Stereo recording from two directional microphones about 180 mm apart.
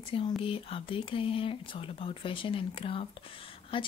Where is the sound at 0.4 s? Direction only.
30° left (ahead or behind).